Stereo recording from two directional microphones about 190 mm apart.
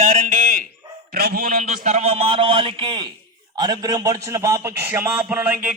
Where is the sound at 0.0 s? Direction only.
40° right (ahead or behind).